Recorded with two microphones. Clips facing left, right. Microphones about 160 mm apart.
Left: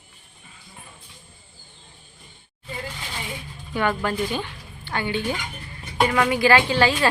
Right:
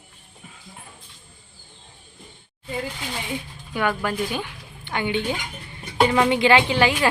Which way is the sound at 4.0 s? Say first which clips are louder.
Left 1 dB; 10° right (ahead or behind).